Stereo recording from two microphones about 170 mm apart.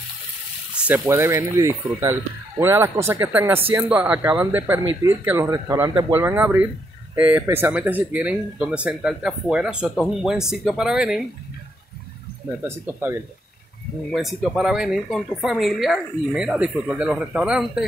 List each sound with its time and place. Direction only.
1.0 s speech: 15° right (ahead or behind)
12.4 s speech: 15° right (ahead or behind)
14.1 s speech: centre (ahead or behind)